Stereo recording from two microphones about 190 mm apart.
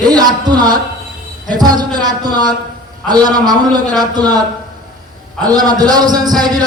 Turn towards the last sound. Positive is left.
turn(degrees=-20)  # may be behind; listen again after turning